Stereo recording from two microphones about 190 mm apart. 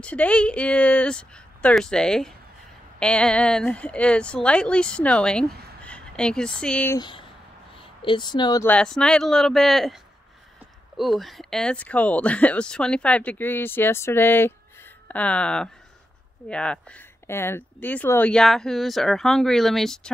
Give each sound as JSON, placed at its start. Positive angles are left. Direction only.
{"t": 0.0, "sound": "speech", "side_deg": 5}
{"t": 7.0, "sound": "speech", "side_deg": 25}
{"t": 7.7, "sound": "a sound", "side_deg": 25}
{"t": 8.6, "sound": "speech", "side_deg": 5}
{"t": 11.0, "sound": "speech", "side_deg": 0}